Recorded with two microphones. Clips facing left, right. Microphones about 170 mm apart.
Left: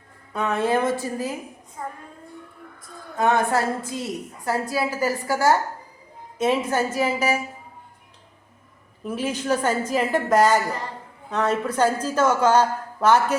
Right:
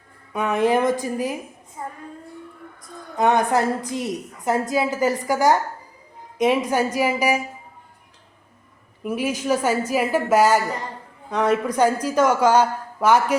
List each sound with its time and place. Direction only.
0.3 s a woman's voice: 15° right (ahead or behind)
1.8 s child singing: 5° right (ahead or behind)
3.2 s a woman's voice: 20° right (ahead or behind)
9.0 s a woman's voice: 10° right (ahead or behind)